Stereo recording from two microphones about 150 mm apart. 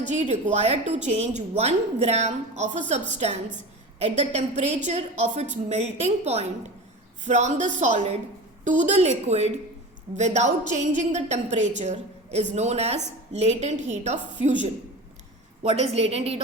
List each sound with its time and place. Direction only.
0.0 s a woman's voice: 55° right (ahead or behind)
15.6 s a woman's voice: 45° right (ahead or behind)